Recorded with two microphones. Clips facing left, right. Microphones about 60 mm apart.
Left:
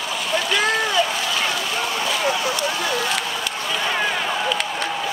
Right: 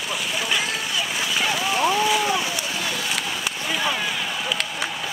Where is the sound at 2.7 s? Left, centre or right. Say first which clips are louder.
Left 4 dB; left.